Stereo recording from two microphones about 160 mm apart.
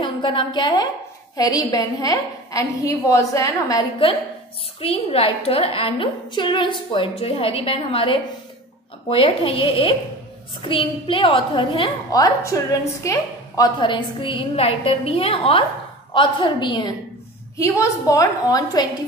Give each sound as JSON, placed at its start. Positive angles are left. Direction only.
{"t": 0.0, "sound": "a woman's voice", "side_deg": 30}